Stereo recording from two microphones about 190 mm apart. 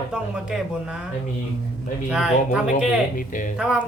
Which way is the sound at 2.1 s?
5° right (ahead or behind).